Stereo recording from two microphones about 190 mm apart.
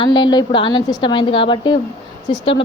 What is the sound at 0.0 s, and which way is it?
A woman's voice, 25° left (ahead or behind).